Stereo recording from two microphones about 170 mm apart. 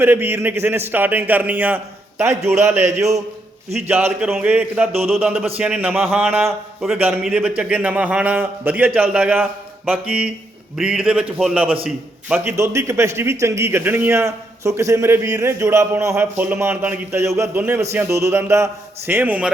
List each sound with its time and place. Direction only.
0.0 s a man's voice: 10° right (ahead or behind)